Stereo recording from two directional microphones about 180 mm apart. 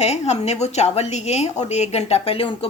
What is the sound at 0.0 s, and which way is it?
A woman's voice, 35° left (ahead or behind).